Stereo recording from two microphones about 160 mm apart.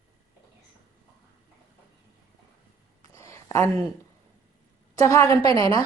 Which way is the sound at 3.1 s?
20° left (ahead or behind).